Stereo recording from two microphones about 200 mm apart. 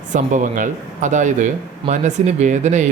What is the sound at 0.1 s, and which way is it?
Speech, 40° right (ahead or behind).